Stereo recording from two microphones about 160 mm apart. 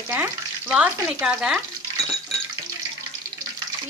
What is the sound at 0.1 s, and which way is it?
Frying, 5° right (ahead or behind).